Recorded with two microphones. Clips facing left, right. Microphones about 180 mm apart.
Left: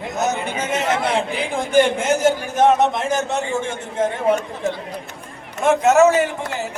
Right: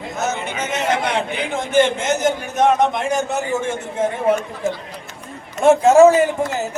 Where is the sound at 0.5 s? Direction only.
30° left (ahead or behind).